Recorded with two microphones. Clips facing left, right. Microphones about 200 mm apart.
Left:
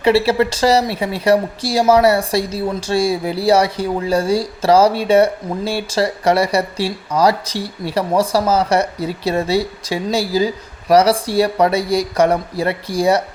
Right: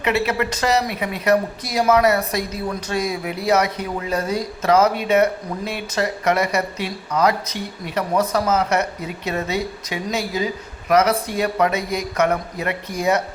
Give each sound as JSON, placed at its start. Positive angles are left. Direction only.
{"t": 0.0, "sound": "speech", "side_deg": 30}